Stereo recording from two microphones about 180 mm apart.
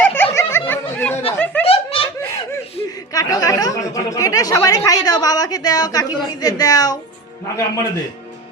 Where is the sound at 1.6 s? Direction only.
30° left (ahead or behind).